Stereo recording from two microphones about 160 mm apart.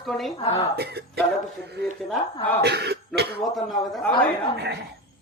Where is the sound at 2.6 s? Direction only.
90° right.